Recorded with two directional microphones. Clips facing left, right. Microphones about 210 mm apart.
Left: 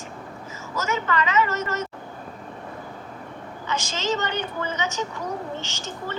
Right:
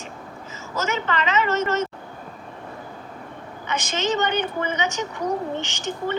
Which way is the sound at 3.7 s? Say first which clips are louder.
Right 2 dB; 20° right (ahead or behind).